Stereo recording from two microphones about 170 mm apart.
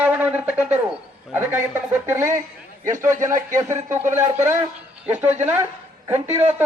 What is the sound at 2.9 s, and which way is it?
Speech, 50° right (ahead or behind).